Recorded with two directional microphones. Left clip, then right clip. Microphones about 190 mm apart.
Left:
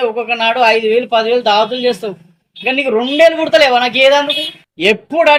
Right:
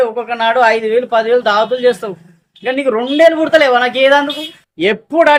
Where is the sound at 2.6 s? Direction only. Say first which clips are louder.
Left 1 dB; 20° right (ahead or behind).